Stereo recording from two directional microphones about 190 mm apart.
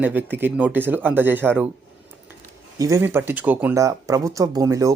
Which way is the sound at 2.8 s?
15° right (ahead or behind).